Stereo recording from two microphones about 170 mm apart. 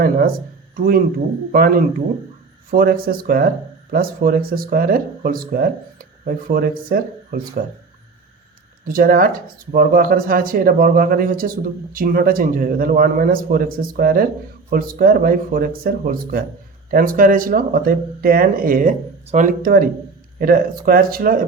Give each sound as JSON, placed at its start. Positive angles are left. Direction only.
{"t": 0.8, "sound": "speech", "side_deg": -60}
{"t": 8.9, "sound": "speech", "side_deg": -55}